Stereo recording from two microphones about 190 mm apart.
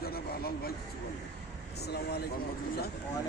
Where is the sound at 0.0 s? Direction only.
55° left (ahead or behind).